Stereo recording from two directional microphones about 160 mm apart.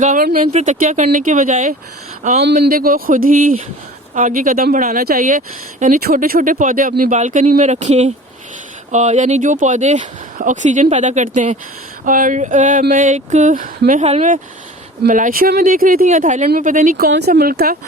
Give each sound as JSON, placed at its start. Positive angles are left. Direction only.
{"t": 0.0, "sound": "speech", "side_deg": -55}
{"t": 2.4, "sound": "speech", "side_deg": -80}
{"t": 17.1, "sound": "speech", "side_deg": -90}